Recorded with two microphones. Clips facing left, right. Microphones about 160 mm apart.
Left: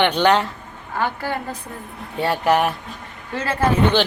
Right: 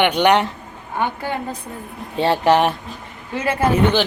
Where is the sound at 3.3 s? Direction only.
15° right (ahead or behind).